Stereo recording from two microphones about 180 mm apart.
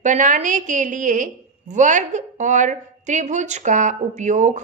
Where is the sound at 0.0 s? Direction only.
45° right (ahead or behind).